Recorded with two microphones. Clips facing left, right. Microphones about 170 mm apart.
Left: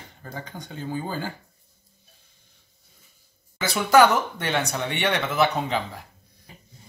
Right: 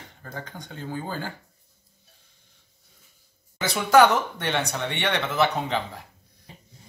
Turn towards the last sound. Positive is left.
turn(degrees=-30)  # may be behind; listen again after turning